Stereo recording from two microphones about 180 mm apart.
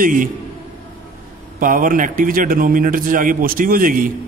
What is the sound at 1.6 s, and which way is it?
A man's voice, 50° right (ahead or behind).